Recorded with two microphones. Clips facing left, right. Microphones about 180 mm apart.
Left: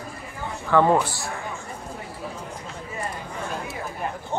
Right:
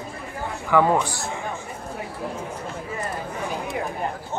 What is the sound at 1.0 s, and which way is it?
Speech, 20° right (ahead or behind).